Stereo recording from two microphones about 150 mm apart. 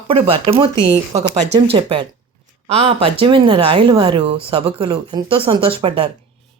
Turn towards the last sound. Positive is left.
turn(degrees=-35)  # may be behind; listen again after turning